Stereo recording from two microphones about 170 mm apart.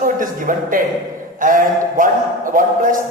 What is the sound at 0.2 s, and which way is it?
A man's voice, 55° right (ahead or behind).